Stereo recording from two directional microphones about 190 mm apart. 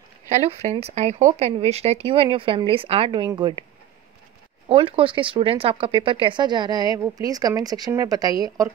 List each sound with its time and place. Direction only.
0.3 s speech: 35° right (ahead or behind)
4.6 s speech: 30° right (ahead or behind)